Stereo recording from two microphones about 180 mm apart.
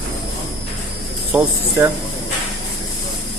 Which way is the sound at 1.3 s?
15° right (ahead or behind).